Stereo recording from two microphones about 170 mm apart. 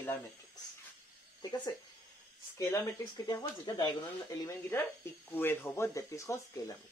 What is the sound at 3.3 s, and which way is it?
Speech, 20° left (ahead or behind).